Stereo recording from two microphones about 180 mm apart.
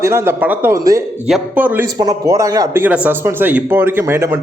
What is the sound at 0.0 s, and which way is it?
Speech, 15° right (ahead or behind).